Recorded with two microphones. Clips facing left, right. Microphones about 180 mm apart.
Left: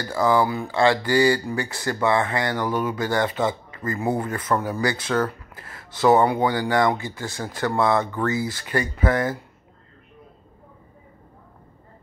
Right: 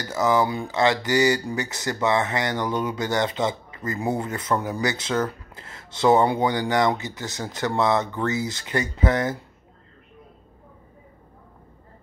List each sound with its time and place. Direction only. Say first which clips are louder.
0.0 s speech: left 1 dB; 20° right (ahead or behind)